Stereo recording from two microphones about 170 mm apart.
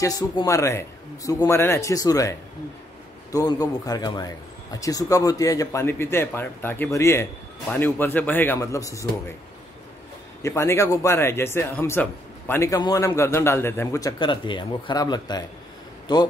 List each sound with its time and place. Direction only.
0.0 s speech: 20° left (ahead or behind)
10.4 s speech: 15° left (ahead or behind)